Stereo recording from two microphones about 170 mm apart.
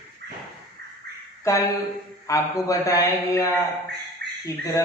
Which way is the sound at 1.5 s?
15° left (ahead or behind).